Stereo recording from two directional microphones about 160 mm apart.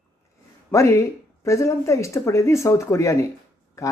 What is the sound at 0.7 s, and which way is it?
Speech, 20° left (ahead or behind).